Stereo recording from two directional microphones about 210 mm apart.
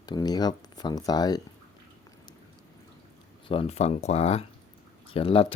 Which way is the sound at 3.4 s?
25° left (ahead or behind).